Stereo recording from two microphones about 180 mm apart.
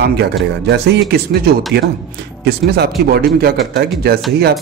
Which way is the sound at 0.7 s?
65° right (ahead or behind).